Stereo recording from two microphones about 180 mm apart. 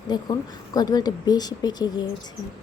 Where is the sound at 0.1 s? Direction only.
20° left (ahead or behind).